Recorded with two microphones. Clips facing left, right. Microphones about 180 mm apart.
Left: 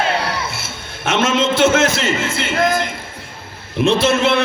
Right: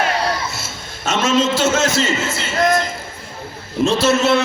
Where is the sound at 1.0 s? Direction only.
55° left (ahead or behind).